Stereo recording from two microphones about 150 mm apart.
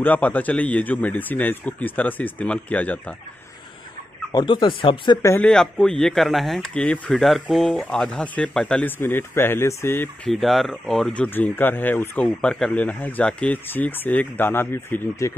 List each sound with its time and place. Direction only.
0.0 s speech: 10° left (ahead or behind)
4.3 s speech: 30° left (ahead or behind)
5.2 s speech: 15° left (ahead or behind)
5.5 s speech: 5° left (ahead or behind)
10.2 s speech: centre (ahead or behind)
11.2 s speech: 15° left (ahead or behind)